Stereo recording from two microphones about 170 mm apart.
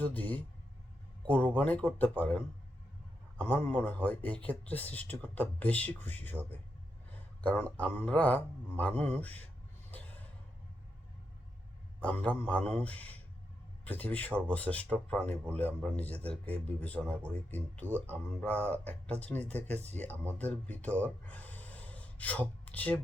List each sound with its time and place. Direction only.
0.0 s a man's voice: 10° left (ahead or behind)
1.5 s a man's voice: 10° left (ahead or behind)
3.5 s a man's voice: 10° left (ahead or behind)
11.9 s a man's voice: 10° left (ahead or behind)
19.6 s speech: 40° right (ahead or behind)
20.4 s a man's voice: 10° left (ahead or behind)
21.2 s gasp: 10° left (ahead or behind)